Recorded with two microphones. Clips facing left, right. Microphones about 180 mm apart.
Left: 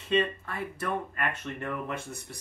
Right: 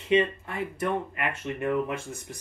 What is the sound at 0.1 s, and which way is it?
Speech, 15° right (ahead or behind).